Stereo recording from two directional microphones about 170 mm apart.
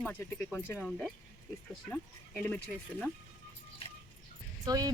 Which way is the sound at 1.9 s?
10° left (ahead or behind).